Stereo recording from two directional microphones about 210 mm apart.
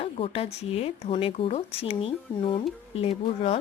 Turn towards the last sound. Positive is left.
turn(degrees=30)  # may be behind; listen again after turning